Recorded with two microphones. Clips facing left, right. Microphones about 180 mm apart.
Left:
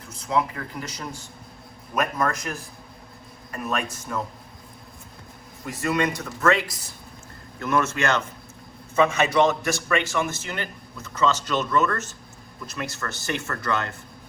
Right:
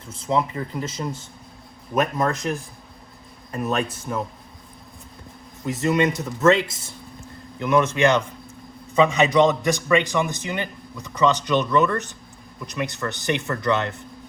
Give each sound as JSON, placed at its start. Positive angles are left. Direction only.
{"t": 0.1, "sound": "speech", "side_deg": -30}
{"t": 5.6, "sound": "a man's voice", "side_deg": -20}